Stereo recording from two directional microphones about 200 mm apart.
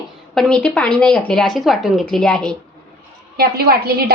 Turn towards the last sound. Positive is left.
turn(degrees=-50)  # may be behind; listen again after turning